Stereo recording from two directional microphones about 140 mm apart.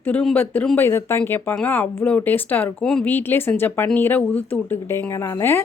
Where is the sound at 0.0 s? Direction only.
5° left (ahead or behind).